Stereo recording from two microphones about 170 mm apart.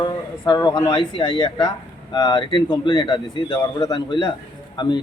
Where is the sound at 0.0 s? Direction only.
25° left (ahead or behind).